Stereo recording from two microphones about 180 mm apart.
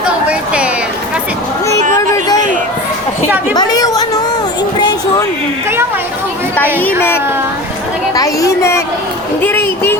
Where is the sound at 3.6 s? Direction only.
20° left (ahead or behind).